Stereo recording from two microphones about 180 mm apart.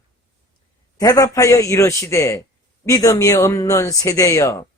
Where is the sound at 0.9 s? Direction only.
20° left (ahead or behind).